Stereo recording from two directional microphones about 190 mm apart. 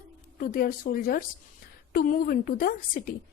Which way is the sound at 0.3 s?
50° left (ahead or behind).